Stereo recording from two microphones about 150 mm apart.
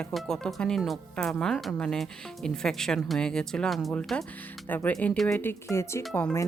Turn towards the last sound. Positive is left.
turn(degrees=15)  # may be behind; listen again after turning